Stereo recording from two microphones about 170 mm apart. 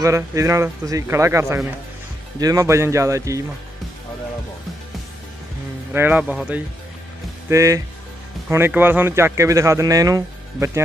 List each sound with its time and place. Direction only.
0.0 s a man's voice: 20° right (ahead or behind)
5.9 s a man's voice: 10° right (ahead or behind)
7.4 s a man's voice: 20° right (ahead or behind)